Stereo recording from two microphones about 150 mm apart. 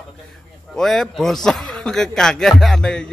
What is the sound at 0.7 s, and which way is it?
A man's voice, centre (ahead or behind).